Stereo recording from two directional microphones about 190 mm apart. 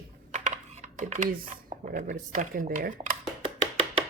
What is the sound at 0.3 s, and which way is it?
Computer keyboard, 40° right (ahead or behind).